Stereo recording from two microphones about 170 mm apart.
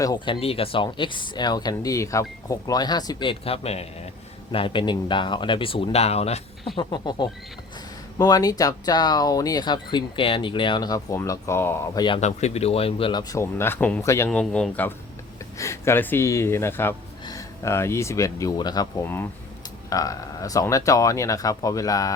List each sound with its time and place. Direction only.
0.0 s speech: 20° left (ahead or behind)
0.3 s speech: 35° left (ahead or behind)
6.7 s speech: 25° left (ahead or behind)
12.2 s speech: 40° left (ahead or behind); by 14.3 s 15° left (ahead or behind)
14.3 s speech: 5° left (ahead or behind)